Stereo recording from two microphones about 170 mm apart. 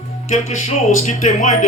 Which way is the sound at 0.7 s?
45° left (ahead or behind).